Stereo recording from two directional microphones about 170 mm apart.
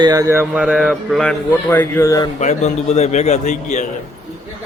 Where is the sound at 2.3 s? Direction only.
40° left (ahead or behind).